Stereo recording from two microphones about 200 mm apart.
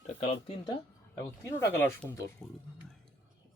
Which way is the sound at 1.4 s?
15° left (ahead or behind).